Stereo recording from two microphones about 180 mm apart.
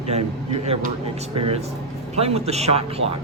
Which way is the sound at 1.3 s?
30° right (ahead or behind).